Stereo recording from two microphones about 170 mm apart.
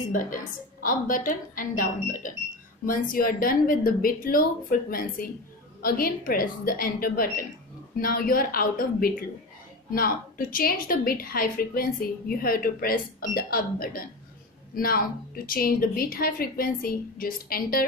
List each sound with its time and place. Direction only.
0.8 s a woman's voice: 55° left (ahead or behind)